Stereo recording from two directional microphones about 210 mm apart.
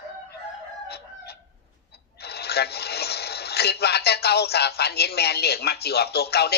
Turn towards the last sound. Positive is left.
turn(degrees=50)  # may be behind; listen again after turning